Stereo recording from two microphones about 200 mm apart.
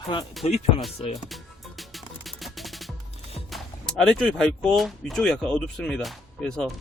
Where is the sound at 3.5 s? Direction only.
Centre (ahead or behind).